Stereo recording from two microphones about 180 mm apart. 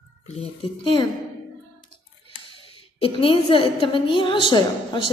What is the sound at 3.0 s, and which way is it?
A woman's voice, 30° left (ahead or behind).